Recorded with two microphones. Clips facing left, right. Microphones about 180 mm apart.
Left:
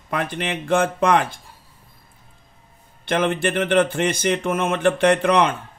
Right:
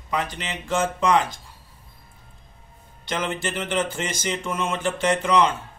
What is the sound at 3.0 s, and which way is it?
Speech, 60° left (ahead or behind).